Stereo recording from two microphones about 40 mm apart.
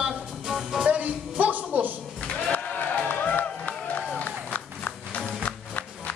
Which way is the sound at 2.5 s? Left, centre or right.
Left.